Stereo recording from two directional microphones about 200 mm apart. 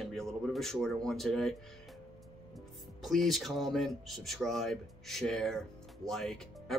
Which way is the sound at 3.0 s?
Centre (ahead or behind).